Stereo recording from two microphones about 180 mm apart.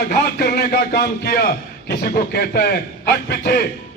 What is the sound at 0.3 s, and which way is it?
A man's voice, 60° left (ahead or behind).